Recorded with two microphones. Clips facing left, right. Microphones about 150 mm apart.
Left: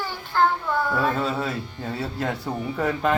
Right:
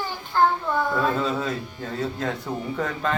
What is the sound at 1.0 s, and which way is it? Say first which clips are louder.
Speech: even; 5° left (ahead or behind).